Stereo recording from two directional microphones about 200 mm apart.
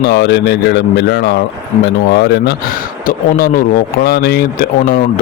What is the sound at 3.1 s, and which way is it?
Speech, 45° left (ahead or behind).